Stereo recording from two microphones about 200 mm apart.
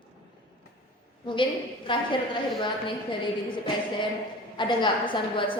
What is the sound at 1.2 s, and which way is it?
Speech, 25° left (ahead or behind).